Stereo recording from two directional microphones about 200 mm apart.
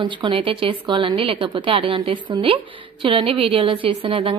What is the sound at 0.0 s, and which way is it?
A woman's voice, 25° right (ahead or behind).